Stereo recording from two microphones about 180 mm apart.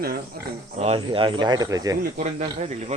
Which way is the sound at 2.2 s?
40° right (ahead or behind).